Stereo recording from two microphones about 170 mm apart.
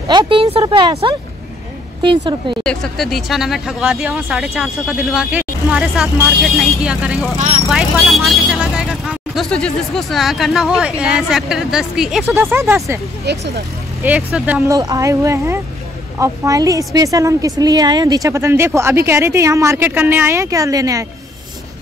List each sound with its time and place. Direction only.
0.1 s speech: 30° right (ahead or behind)
2.6 s speech: 5° left (ahead or behind)
7.3 s speech: 45° right (ahead or behind)
7.6 s speech: centre (ahead or behind)
12.4 s speech: 15° right (ahead or behind)
14.0 s speech: 10° right (ahead or behind)
14.8 s speech: 20° right (ahead or behind)